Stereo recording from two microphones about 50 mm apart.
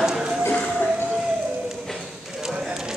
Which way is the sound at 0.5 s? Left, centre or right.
Centre.